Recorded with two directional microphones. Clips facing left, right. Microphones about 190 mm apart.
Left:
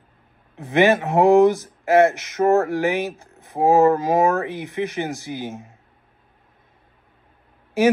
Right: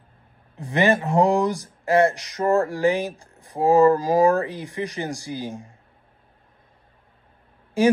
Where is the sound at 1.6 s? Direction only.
20° left (ahead or behind).